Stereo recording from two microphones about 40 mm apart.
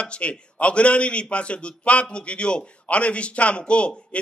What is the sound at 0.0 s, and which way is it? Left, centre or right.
A man's voice, left.